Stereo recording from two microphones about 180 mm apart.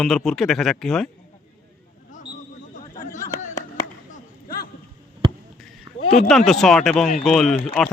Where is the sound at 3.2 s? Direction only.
15° left (ahead or behind).